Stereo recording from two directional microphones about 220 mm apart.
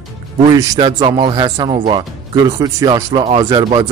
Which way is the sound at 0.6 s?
20° right (ahead or behind).